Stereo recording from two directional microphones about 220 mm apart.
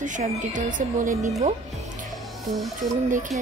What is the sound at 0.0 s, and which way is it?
Speech, 35° right (ahead or behind).